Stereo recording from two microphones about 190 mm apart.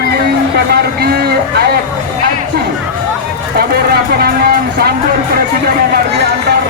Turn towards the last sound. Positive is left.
turn(degrees=-55)  # may be behind; listen again after turning